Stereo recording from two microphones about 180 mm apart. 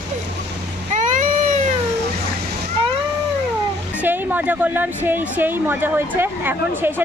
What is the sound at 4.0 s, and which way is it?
Speech, 10° right (ahead or behind).